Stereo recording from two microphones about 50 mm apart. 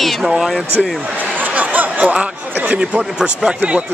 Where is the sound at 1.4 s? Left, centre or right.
Right.